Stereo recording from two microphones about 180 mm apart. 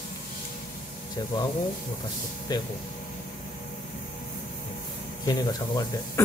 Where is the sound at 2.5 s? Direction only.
25° left (ahead or behind).